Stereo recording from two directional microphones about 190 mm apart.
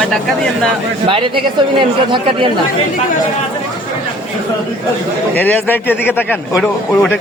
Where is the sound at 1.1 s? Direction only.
25° right (ahead or behind).